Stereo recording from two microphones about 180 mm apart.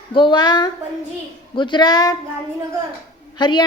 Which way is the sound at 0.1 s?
25° left (ahead or behind).